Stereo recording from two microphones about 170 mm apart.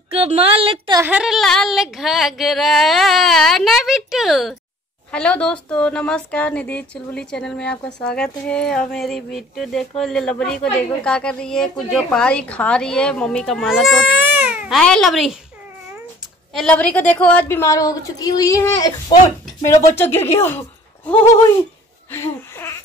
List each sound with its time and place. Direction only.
0.1 s a woman's voice: 35° right (ahead or behind)
1.0 s a woman's voice: 5° right (ahead or behind)
14.8 s a woman's voice: 5° left (ahead or behind)
16.5 s a woman's voice: 5° left (ahead or behind)
22.1 s babbling: 15° left (ahead or behind)